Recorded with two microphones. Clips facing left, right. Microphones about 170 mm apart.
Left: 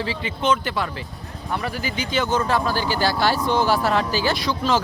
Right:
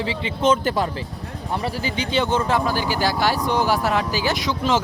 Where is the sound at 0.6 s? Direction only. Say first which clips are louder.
Right 4 dB; 40° right (ahead or behind).